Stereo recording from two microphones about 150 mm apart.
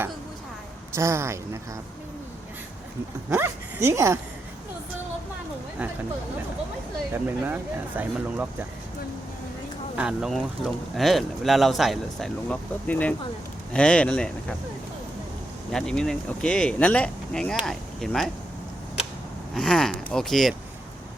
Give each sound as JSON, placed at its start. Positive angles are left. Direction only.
{"t": 0.9, "sound": "a man's voice", "side_deg": -20}
{"t": 3.2, "sound": "speech", "side_deg": -15}
{"t": 7.1, "sound": "speech", "side_deg": -15}
{"t": 9.9, "sound": "speech", "side_deg": -5}
{"t": 15.7, "sound": "speech", "side_deg": 5}
{"t": 19.5, "sound": "speech", "side_deg": 5}